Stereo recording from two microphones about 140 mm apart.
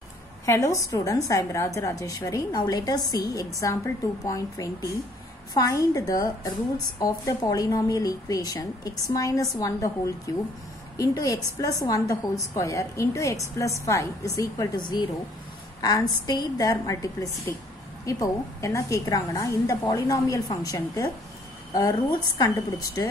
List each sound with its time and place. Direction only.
0.5 s a woman's voice: 25° left (ahead or behind)